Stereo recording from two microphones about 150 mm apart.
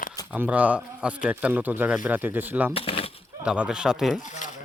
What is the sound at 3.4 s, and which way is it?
Speech, 5° right (ahead or behind).